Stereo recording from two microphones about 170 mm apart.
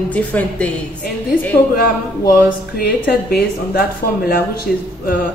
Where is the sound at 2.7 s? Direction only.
60° left (ahead or behind).